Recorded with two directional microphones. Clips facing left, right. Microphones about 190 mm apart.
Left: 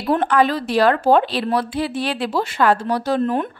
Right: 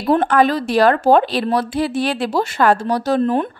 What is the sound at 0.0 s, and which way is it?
Speech, 40° right (ahead or behind).